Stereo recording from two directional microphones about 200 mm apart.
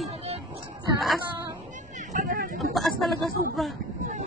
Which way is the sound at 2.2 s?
45° right (ahead or behind).